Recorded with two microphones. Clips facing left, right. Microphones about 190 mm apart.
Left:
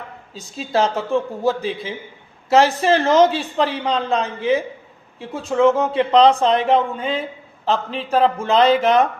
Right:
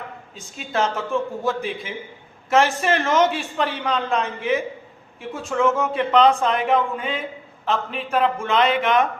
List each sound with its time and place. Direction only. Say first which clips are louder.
0.3 s a man's voice: left 4 dB; 35° left (ahead or behind)